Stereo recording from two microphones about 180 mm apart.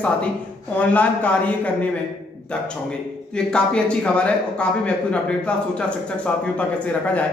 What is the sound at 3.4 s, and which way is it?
A man's voice, 5° left (ahead or behind).